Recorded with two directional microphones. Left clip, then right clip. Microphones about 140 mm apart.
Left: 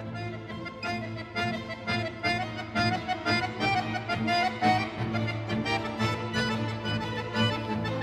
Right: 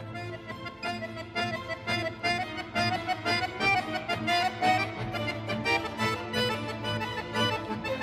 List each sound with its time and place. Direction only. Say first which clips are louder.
0.8 s music: even; 30° right (ahead or behind)